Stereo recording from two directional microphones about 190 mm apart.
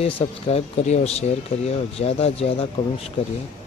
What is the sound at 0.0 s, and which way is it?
Speech, 30° left (ahead or behind).